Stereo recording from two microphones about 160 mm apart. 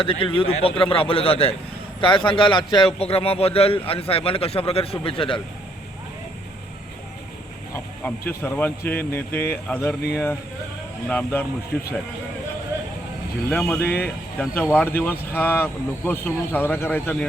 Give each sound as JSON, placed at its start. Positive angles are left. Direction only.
{"t": 0.0, "sound": "a man's voice", "side_deg": 35}
{"t": 8.3, "sound": "speech", "side_deg": 15}
{"t": 11.1, "sound": "speech", "side_deg": 10}
{"t": 13.5, "sound": "speech", "side_deg": 10}